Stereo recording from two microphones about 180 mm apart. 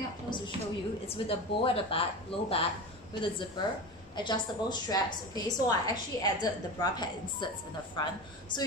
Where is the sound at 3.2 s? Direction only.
25° left (ahead or behind).